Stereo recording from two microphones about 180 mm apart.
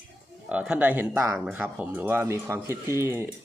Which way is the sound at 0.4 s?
5° right (ahead or behind).